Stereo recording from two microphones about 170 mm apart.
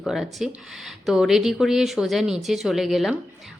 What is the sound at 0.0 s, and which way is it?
Speech, centre (ahead or behind).